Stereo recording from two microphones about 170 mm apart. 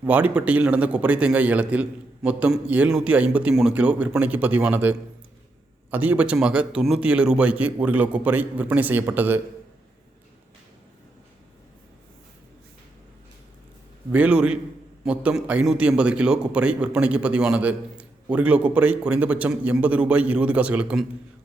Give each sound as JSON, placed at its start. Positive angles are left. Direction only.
{"t": 0.0, "sound": "a man's voice", "side_deg": -10}
{"t": 14.1, "sound": "a man's voice", "side_deg": -10}